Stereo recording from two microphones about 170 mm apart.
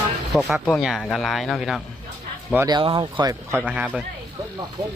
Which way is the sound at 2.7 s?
25° right (ahead or behind).